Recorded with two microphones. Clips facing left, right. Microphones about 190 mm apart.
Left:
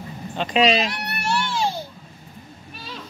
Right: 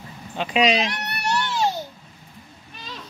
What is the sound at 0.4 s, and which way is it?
Speech, 5° right (ahead or behind).